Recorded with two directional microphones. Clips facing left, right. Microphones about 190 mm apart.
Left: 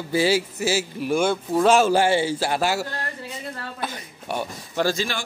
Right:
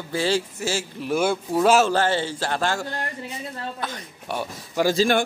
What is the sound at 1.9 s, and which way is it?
A man's voice, 10° left (ahead or behind).